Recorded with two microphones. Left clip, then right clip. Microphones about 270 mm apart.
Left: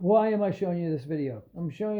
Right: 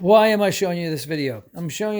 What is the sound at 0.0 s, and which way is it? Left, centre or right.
Speech, right.